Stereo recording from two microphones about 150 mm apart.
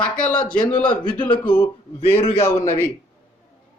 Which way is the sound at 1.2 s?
30° left (ahead or behind).